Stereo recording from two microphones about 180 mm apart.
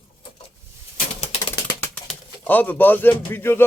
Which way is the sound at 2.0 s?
10° left (ahead or behind).